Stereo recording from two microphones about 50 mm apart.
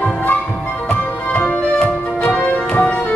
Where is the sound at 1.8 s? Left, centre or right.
Left.